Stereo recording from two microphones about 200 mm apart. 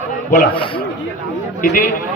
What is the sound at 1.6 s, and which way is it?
Speech, 40° left (ahead or behind).